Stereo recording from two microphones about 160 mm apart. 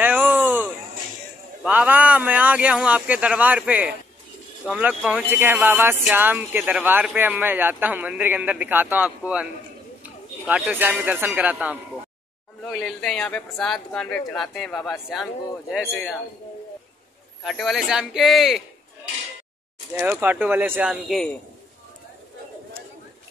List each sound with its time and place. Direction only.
0.0 s a sound: 10° right (ahead or behind)
1.6 s speech: 10° right (ahead or behind)
17.4 s speech: centre (ahead or behind)
19.9 s speech: 10° right (ahead or behind)